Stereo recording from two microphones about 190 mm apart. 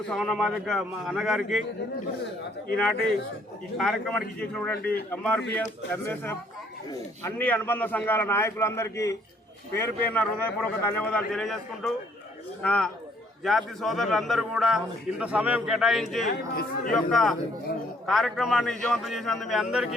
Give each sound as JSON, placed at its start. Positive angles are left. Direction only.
{"t": 0.1, "sound": "a man's voice", "side_deg": 0}
{"t": 3.8, "sound": "a man's voice", "side_deg": 0}
{"t": 16.3, "sound": "speech", "side_deg": 50}
{"t": 16.9, "sound": "a man's voice", "side_deg": 0}